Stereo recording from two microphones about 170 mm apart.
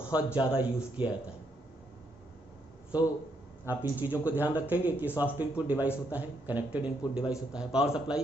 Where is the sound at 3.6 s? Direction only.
10° right (ahead or behind).